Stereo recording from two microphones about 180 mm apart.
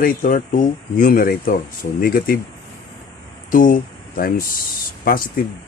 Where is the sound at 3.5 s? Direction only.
50° left (ahead or behind).